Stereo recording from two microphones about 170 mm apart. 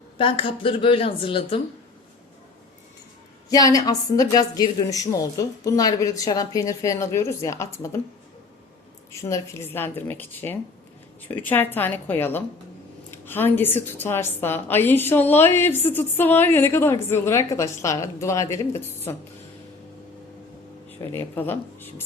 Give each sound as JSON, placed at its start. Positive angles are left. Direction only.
{"t": 0.2, "sound": "speech", "side_deg": 30}
{"t": 3.5, "sound": "a woman's voice", "side_deg": 20}
{"t": 9.1, "sound": "a woman's voice", "side_deg": 15}
{"t": 21.0, "sound": "a woman's voice", "side_deg": 15}